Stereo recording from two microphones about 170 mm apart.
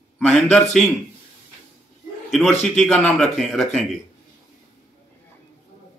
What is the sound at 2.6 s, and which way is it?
Speech, 5° left (ahead or behind).